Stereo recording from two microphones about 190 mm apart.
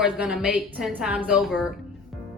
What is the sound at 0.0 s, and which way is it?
A woman's voice, 5° right (ahead or behind).